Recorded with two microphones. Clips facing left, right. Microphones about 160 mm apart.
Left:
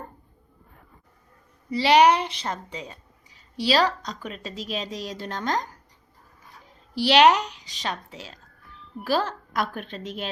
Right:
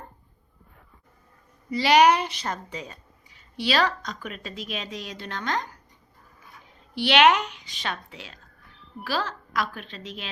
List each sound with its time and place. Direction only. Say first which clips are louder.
1.7 s a woman's voice: left 1 dB; 25° left (ahead or behind); by 10.2 s 50° left (ahead or behind)